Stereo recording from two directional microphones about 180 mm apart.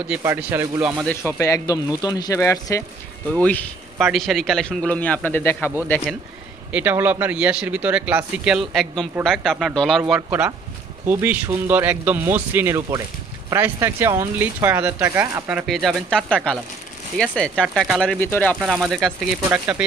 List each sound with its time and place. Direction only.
0.2 s speech: 15° right (ahead or behind)
1.0 s speech: 15° left (ahead or behind)
6.7 s speech: 10° right (ahead or behind)